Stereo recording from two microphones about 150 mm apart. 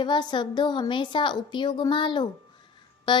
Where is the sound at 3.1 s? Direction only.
30° left (ahead or behind).